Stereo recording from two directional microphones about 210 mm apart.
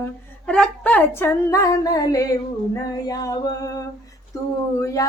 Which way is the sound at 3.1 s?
20° left (ahead or behind).